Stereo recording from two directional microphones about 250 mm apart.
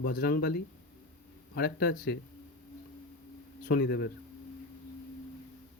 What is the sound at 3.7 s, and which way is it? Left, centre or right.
Speech, left.